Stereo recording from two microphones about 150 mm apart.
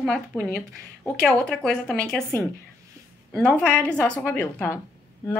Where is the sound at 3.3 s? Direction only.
10° left (ahead or behind).